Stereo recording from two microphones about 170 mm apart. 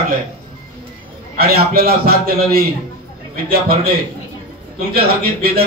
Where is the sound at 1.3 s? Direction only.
60° right (ahead or behind).